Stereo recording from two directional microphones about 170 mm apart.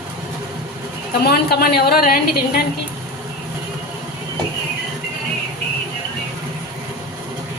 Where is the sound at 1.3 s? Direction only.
65° left (ahead or behind).